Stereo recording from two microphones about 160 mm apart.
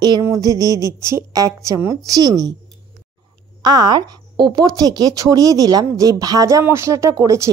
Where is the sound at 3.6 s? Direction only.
25° right (ahead or behind).